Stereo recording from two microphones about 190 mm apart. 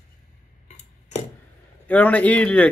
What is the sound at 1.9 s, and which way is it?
Speech, 5° left (ahead or behind).